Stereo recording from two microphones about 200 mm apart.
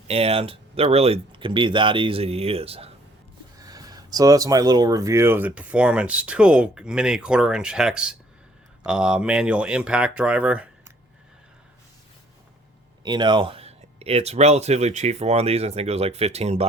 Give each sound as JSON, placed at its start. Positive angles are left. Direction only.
{"t": 0.1, "sound": "speech", "side_deg": -30}
{"t": 3.7, "sound": "speech", "side_deg": -20}
{"t": 13.0, "sound": "speech", "side_deg": -20}